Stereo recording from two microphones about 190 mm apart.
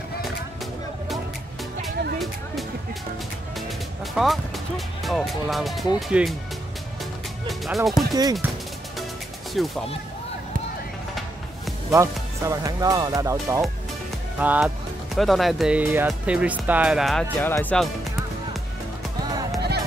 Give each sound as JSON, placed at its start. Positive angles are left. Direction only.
{"t": 3.5, "sound": "speech", "side_deg": 0}
{"t": 7.4, "sound": "speech", "side_deg": 0}
{"t": 8.1, "sound": "speech", "side_deg": -20}
{"t": 9.5, "sound": "speech", "side_deg": 0}
{"t": 11.9, "sound": "speech", "side_deg": -15}